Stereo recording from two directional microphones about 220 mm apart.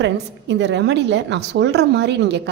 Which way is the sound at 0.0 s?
55° right (ahead or behind).